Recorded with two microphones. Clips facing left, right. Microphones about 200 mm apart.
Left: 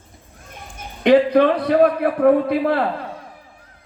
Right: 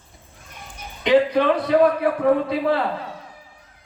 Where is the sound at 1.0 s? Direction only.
55° left (ahead or behind).